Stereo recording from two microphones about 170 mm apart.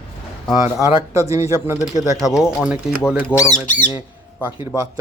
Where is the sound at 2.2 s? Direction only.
5° right (ahead or behind).